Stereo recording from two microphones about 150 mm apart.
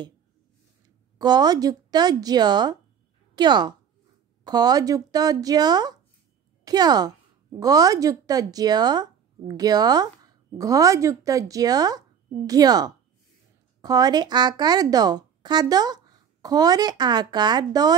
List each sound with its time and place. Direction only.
1.1 s a woman's voice: 30° right (ahead or behind)